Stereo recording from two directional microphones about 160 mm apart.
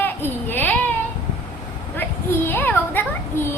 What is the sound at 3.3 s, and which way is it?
Children playing, 15° left (ahead or behind).